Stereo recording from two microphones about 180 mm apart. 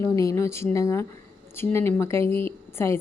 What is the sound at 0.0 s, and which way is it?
A woman's voice, 15° left (ahead or behind).